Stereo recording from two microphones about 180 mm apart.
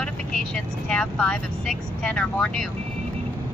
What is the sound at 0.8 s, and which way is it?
Speech, 5° left (ahead or behind).